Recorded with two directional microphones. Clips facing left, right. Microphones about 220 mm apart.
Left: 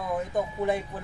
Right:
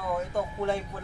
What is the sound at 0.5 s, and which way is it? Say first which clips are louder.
Speech: left 2 dB; 15° left (ahead or behind).